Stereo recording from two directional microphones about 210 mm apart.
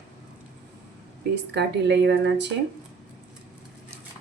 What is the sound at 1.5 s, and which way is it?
Speech, 55° right (ahead or behind).